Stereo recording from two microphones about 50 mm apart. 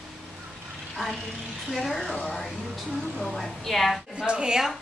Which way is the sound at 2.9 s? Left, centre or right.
Centre.